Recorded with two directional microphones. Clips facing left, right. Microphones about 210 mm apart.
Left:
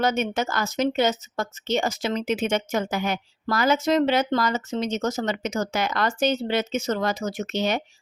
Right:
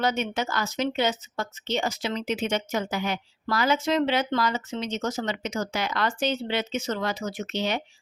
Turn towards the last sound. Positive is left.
turn(degrees=45)  # may be behind; listen again after turning